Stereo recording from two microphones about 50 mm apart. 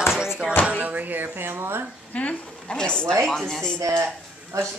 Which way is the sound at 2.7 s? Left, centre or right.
Centre.